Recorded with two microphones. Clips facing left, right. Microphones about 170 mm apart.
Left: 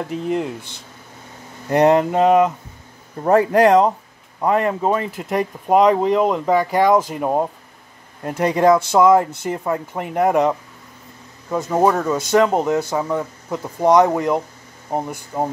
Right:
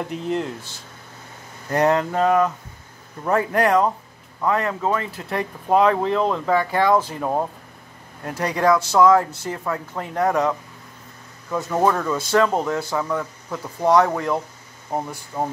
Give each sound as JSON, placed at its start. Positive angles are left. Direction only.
{"t": 0.1, "sound": "speech", "side_deg": 5}
{"t": 1.7, "sound": "speech", "side_deg": 20}
{"t": 11.5, "sound": "speech", "side_deg": 15}